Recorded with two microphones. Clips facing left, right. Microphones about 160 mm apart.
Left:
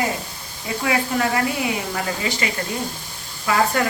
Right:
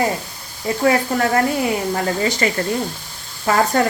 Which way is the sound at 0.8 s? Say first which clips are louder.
Right 4 dB; 45° right (ahead or behind).